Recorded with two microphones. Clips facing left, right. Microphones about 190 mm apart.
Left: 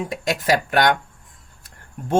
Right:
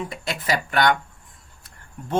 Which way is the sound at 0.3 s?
45° left (ahead or behind).